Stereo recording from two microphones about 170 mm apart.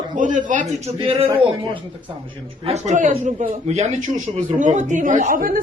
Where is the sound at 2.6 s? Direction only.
45° right (ahead or behind).